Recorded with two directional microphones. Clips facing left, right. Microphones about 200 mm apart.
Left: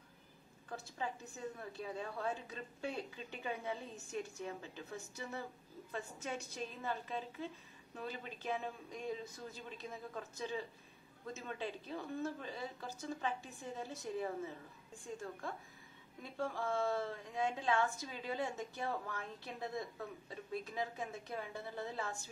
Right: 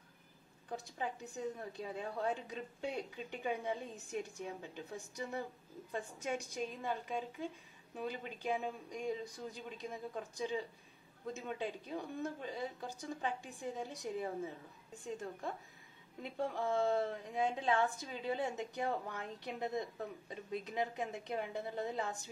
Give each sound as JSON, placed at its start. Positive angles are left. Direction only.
{"t": 0.7, "sound": "a woman's voice", "side_deg": -15}